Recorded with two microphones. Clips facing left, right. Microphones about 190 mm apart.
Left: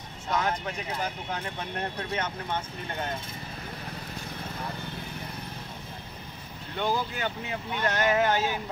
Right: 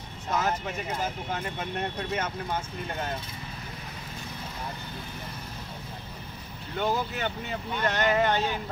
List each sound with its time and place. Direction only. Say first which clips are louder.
0.3 s speech: even; 5° right (ahead or behind)
6.8 s speech: right 1 dB; centre (ahead or behind)